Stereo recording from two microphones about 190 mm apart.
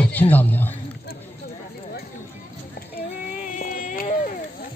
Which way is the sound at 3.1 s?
45° left (ahead or behind).